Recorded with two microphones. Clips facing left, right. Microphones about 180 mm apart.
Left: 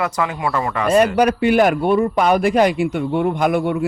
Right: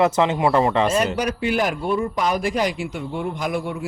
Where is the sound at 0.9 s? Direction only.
60° left (ahead or behind).